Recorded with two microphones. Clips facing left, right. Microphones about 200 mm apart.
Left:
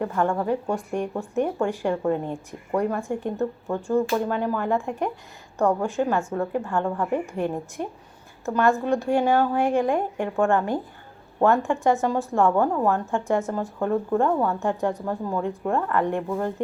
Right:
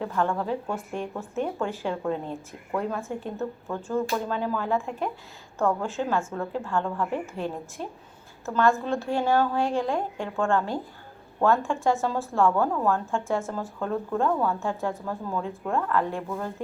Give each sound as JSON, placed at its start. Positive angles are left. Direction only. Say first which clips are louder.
{"t": 0.2, "sound": "a woman's voice", "louder": "left 3 dB", "side_deg": 15}